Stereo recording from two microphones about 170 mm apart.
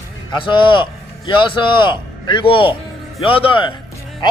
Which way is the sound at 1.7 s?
30° left (ahead or behind).